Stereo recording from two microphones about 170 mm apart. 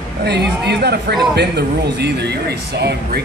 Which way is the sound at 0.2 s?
75° right (ahead or behind).